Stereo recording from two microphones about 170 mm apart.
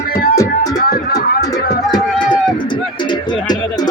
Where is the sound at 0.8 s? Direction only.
60° left (ahead or behind).